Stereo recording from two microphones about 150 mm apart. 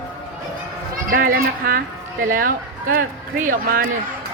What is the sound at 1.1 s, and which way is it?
A woman's voice, 70° right (ahead or behind).